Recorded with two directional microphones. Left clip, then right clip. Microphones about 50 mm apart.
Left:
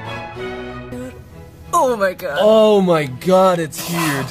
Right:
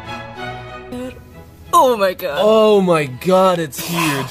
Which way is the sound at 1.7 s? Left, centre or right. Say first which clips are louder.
Right 3 dB; right.